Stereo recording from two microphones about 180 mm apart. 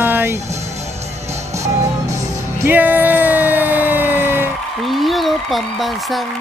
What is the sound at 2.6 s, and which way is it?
Emergency vehicle, 10° right (ahead or behind).